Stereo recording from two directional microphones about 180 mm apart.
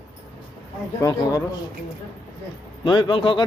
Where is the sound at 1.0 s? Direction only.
20° left (ahead or behind).